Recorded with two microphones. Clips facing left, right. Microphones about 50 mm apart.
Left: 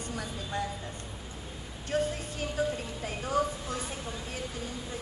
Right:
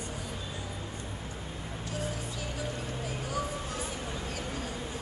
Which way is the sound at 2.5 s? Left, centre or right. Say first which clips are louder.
Left 7 dB; left.